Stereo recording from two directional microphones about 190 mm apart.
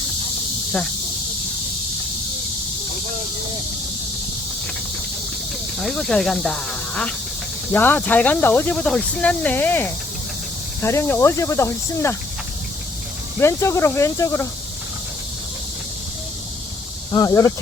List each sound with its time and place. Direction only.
5.8 s speech: 5° left (ahead or behind)
13.4 s speech: 15° left (ahead or behind)
17.1 s speech: 15° left (ahead or behind)